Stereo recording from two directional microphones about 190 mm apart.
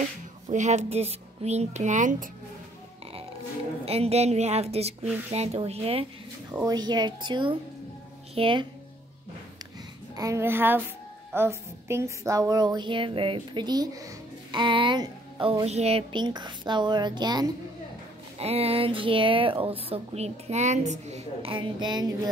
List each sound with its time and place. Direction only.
0.0 s speech: 40° right (ahead or behind)
3.8 s a woman's voice: 30° right (ahead or behind)
6.6 s a woman's voice: 20° right (ahead or behind)
10.1 s a child's voice: 15° right (ahead or behind)